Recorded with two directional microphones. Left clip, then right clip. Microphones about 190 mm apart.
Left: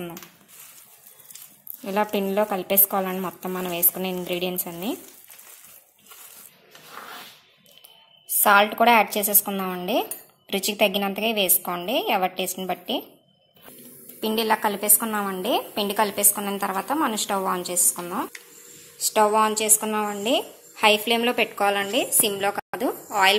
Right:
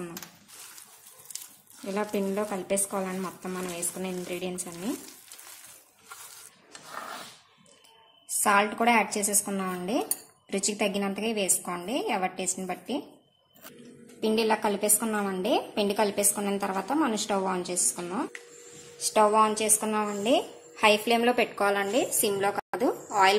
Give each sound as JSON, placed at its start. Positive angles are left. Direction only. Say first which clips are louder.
{"t": 1.9, "sound": "speech", "louder": "left 6 dB", "side_deg": 25}
{"t": 8.4, "sound": "speech", "louder": "left 7 dB", "side_deg": 20}
{"t": 14.2, "sound": "a woman's voice", "louder": "left 3 dB", "side_deg": 5}